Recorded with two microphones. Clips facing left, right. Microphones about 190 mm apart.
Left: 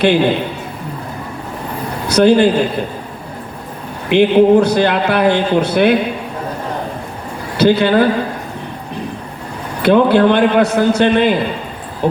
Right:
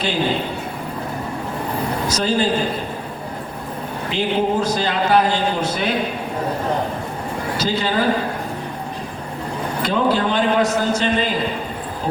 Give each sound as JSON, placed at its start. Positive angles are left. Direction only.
{"t": 2.0, "sound": "a man's voice", "side_deg": 65}
{"t": 4.1, "sound": "a man's voice", "side_deg": 65}
{"t": 7.5, "sound": "a man's voice", "side_deg": 60}
{"t": 9.8, "sound": "a man's voice", "side_deg": 65}